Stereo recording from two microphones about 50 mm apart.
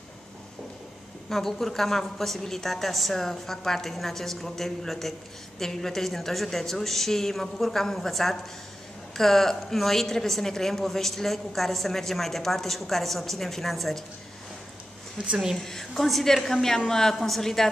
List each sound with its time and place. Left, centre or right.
1.3 s a woman's voice: centre
15.1 s speech: right
15.5 s a woman's voice: centre